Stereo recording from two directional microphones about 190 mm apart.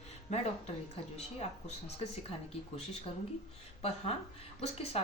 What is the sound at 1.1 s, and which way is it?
Speech, 35° left (ahead or behind).